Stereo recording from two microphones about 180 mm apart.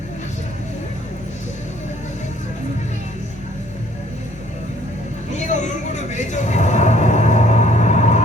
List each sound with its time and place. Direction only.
5.3 s vehicle: 40° left (ahead or behind)